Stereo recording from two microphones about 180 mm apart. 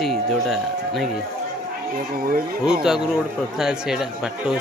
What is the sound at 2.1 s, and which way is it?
Speech, 55° right (ahead or behind).